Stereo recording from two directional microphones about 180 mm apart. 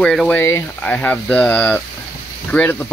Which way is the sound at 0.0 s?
Centre (ahead or behind).